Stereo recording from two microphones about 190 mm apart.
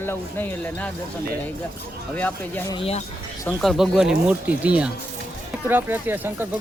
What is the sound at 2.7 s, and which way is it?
Speech, 30° left (ahead or behind).